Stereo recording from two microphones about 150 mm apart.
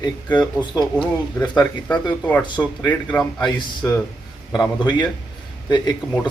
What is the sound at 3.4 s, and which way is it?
Speech, 20° left (ahead or behind).